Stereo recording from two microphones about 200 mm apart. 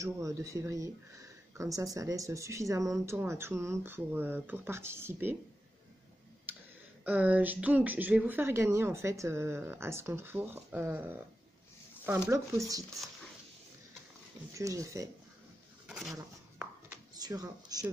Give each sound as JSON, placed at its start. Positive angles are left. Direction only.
{"t": 0.0, "sound": "speech", "side_deg": -15}
{"t": 6.5, "sound": "tick-tock", "side_deg": -10}
{"t": 7.1, "sound": "speech", "side_deg": -10}
{"t": 12.3, "sound": "speech", "side_deg": -15}
{"t": 14.5, "sound": "speech", "side_deg": -15}
{"t": 15.9, "sound": "speech", "side_deg": 0}
{"t": 16.2, "sound": "a sound", "side_deg": -15}